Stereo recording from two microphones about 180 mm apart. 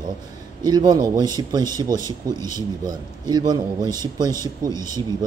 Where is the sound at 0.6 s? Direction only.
20° right (ahead or behind).